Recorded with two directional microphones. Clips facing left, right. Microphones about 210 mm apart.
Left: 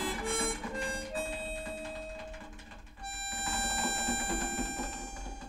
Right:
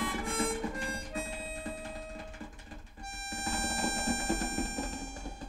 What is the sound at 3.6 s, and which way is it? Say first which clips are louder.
Music: right 1 dB; 30° left (ahead or behind).